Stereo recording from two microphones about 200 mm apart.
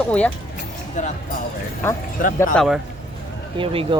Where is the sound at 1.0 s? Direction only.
35° left (ahead or behind).